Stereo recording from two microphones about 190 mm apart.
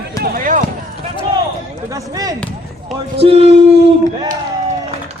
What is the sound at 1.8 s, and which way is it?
Speech, 15° right (ahead or behind).